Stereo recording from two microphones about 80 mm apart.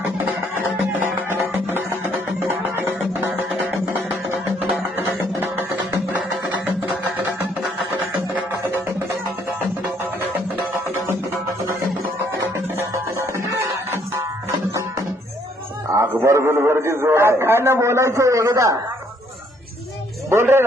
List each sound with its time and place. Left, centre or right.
1.0 s music: right
4.7 s music: right
6.7 s music: right
12.5 s music: right
16.0 s a man's voice: right
20.3 s speech: right